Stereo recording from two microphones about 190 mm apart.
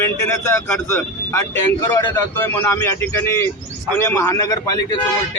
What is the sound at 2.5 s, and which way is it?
Speech, 10° left (ahead or behind).